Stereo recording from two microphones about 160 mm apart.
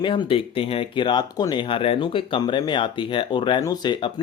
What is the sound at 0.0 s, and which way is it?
Speech, 30° left (ahead or behind).